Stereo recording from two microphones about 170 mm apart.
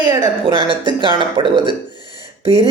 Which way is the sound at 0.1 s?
25° right (ahead or behind).